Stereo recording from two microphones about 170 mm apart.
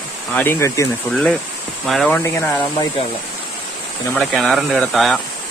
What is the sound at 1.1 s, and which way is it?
Speech, 5° left (ahead or behind).